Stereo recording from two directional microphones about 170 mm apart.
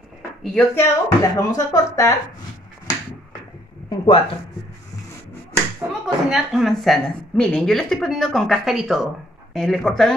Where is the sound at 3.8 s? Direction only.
30° left (ahead or behind).